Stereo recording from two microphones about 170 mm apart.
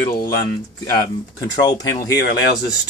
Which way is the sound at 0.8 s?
20° left (ahead or behind).